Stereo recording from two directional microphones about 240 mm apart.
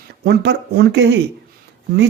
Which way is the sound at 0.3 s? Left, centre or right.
Right.